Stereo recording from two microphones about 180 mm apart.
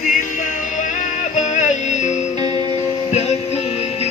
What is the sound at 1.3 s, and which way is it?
Music, 40° left (ahead or behind).